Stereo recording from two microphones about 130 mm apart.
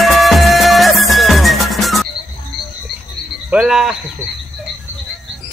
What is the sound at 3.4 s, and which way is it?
Speech, 5° right (ahead or behind).